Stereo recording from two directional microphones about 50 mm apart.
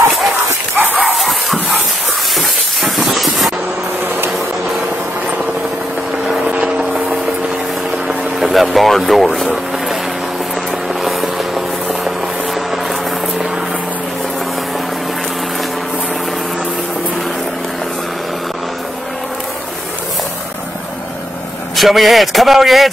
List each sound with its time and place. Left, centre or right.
0.3 s dog: right
0.9 s a sound: centre
2.3 s spray: centre
6.8 s a sound: centre
8.4 s speech: centre
10.9 s vehicle: centre
21.7 s speech: centre